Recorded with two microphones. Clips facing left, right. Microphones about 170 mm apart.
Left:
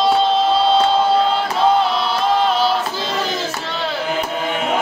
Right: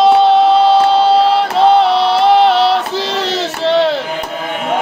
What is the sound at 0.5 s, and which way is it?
Music, 70° right (ahead or behind).